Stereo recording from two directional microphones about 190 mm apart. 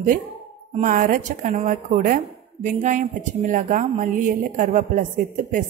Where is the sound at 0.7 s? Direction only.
45° right (ahead or behind).